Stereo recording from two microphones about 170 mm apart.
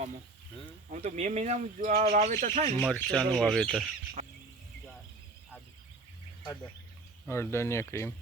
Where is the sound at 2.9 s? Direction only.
5° left (ahead or behind).